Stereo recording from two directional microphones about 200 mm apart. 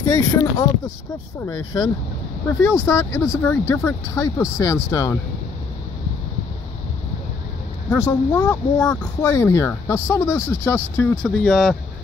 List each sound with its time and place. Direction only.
0.0 s speech: 10° left (ahead or behind)
7.9 s speech: 10° left (ahead or behind)